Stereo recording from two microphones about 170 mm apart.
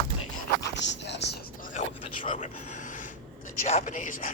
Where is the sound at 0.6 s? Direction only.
90° left.